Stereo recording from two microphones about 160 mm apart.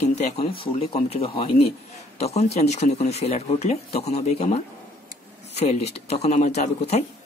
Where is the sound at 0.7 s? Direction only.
40° left (ahead or behind).